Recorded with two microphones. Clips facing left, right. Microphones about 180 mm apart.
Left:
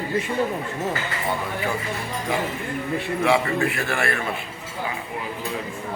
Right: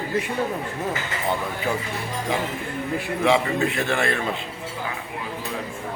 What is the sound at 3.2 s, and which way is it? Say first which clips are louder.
A man's voice: right 1 dB; 20° right (ahead or behind).